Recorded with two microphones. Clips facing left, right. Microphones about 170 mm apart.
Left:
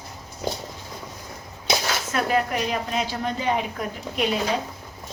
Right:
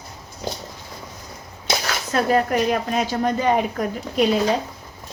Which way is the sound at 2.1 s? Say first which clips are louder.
Right 5 dB; 40° right (ahead or behind).